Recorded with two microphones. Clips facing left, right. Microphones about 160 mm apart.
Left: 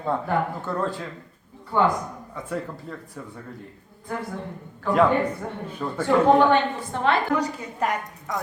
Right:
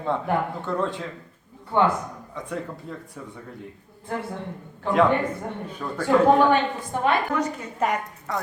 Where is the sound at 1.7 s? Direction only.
20° right (ahead or behind).